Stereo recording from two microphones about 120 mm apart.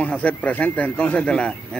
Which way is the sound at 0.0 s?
10° left (ahead or behind).